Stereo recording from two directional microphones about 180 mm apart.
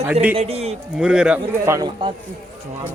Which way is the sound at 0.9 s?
5° right (ahead or behind).